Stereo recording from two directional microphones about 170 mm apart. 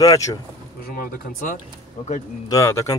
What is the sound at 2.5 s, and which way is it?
Speech, 20° left (ahead or behind).